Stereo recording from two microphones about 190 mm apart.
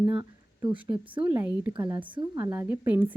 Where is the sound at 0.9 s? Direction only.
25° right (ahead or behind).